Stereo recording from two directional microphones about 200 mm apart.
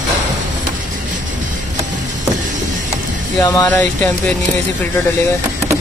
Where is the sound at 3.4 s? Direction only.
15° left (ahead or behind).